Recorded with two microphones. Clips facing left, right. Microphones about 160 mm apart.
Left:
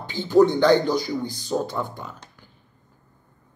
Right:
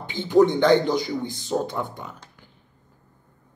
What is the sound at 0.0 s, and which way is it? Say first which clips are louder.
A man's voice: left 1 dB; 20° right (ahead or behind).